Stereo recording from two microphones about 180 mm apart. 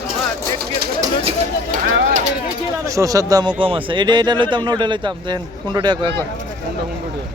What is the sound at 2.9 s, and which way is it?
Speech, 15° right (ahead or behind).